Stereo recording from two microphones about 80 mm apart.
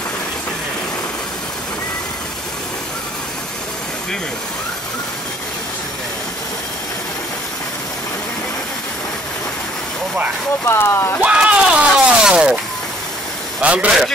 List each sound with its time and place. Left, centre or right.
10.7 s speech: left
11.3 s speech: centre
13.6 s a man's voice: centre